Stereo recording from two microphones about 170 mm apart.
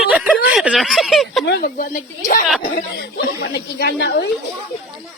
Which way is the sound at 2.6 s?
70° left (ahead or behind).